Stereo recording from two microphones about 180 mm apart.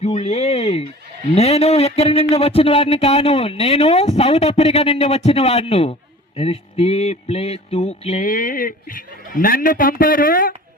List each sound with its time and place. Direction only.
0.0 s speech: 35° left (ahead or behind)